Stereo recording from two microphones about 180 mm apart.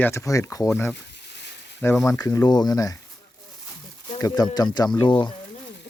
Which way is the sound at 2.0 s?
15° left (ahead or behind).